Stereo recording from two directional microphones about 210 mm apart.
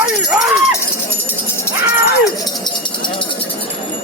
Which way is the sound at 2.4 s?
20° left (ahead or behind).